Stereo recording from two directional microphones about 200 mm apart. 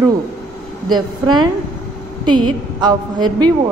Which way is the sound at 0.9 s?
20° right (ahead or behind).